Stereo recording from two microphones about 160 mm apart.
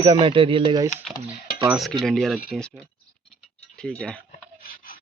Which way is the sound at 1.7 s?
Centre (ahead or behind).